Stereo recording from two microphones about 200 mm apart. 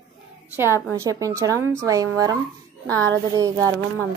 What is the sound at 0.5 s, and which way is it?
A woman's voice, 10° right (ahead or behind).